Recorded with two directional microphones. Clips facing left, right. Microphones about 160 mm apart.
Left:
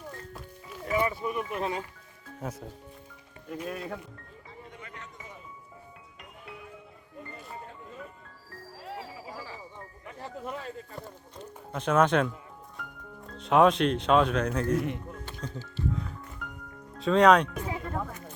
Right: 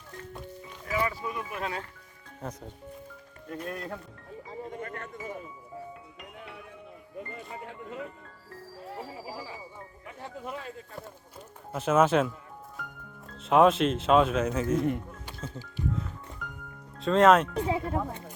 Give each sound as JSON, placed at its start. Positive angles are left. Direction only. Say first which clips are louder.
{"t": 1.2, "sound": "speech", "louder": "left 3 dB", "side_deg": 15}
{"t": 2.4, "sound": "speech", "louder": "left 1 dB", "side_deg": 5}
{"t": 4.6, "sound": "a sound", "louder": "right 8 dB", "side_deg": -50}
{"t": 7.6, "sound": "music", "louder": "right 5 dB", "side_deg": -85}
{"t": 9.3, "sound": "a sound", "louder": "right 2 dB", "side_deg": -15}
{"t": 10.1, "sound": "speech", "louder": "left 1 dB", "side_deg": 0}
{"t": 13.3, "sound": "speech", "louder": "right 1 dB", "side_deg": 0}
{"t": 15.3, "sound": "music", "louder": "left 1 dB", "side_deg": -10}
{"t": 17.0, "sound": "speech", "louder": "even", "side_deg": 0}
{"t": 17.7, "sound": "speech", "louder": "right 5 dB", "side_deg": -15}